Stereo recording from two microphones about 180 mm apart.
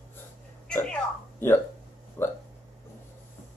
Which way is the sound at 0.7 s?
5° left (ahead or behind).